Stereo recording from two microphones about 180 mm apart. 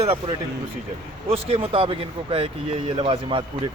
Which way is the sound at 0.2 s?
25° right (ahead or behind).